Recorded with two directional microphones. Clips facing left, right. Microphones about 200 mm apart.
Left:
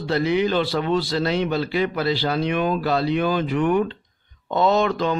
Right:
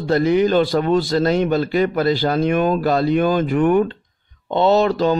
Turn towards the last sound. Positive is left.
turn(degrees=-35)  # may be behind; listen again after turning